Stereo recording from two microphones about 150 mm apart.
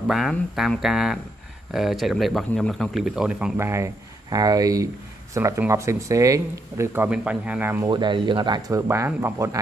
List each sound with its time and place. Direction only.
0.1 s speech: centre (ahead or behind)
3.5 s speech: 20° right (ahead or behind)
7.9 s speech: 30° right (ahead or behind)